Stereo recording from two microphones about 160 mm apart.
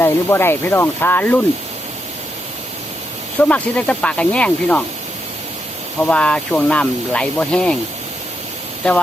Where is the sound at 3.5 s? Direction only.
10° left (ahead or behind).